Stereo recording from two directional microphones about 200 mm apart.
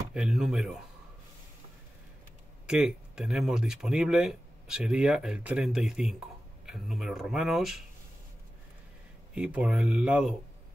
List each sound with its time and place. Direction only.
0.1 s speech: 5° right (ahead or behind)
2.6 s speech: 5° right (ahead or behind)
9.3 s speech: 5° right (ahead or behind)